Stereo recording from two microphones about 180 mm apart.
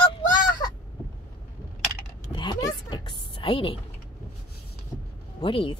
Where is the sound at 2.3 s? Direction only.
25° left (ahead or behind).